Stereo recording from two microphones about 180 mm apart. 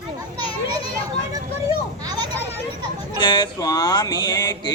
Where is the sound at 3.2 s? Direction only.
25° left (ahead or behind).